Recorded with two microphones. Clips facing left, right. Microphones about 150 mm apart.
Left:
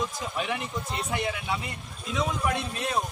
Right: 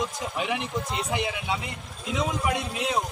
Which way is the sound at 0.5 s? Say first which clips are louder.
Right 3 dB; 85° right.